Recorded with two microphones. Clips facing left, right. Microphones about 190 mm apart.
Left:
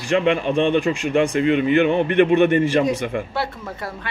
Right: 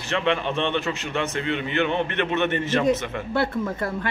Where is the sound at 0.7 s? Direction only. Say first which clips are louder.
Left 8 dB; 15° left (ahead or behind).